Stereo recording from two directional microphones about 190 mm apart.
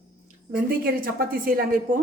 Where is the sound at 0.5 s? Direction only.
50° right (ahead or behind).